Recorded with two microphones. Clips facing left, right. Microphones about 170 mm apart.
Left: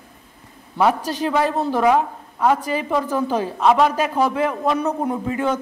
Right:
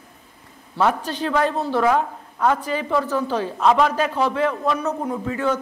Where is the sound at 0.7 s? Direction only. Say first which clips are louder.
Left 2 dB; 10° left (ahead or behind).